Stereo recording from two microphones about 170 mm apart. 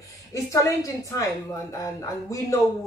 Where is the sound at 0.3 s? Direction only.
20° left (ahead or behind).